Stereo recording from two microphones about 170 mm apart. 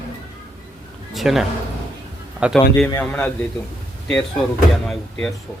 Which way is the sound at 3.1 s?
10° left (ahead or behind).